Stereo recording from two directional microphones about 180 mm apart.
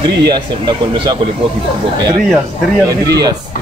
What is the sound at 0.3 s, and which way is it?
Speech, 25° right (ahead or behind).